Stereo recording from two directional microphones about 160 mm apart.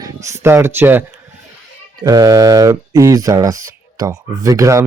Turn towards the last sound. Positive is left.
turn(degrees=-20)  # may be behind; listen again after turning